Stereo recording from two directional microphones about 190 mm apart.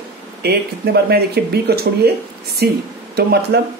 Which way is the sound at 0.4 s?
60° right (ahead or behind).